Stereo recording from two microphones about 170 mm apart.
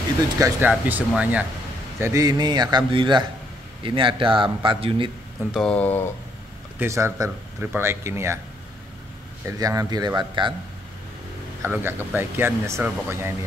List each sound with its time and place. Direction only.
0.4 s speech: 10° right (ahead or behind)
2.0 s a man's voice: 20° right (ahead or behind)
5.5 s speech: 5° left (ahead or behind)
6.8 s speech: 15° right (ahead or behind)
9.6 s a man's voice: 20° right (ahead or behind)
11.6 s speech: 10° right (ahead or behind)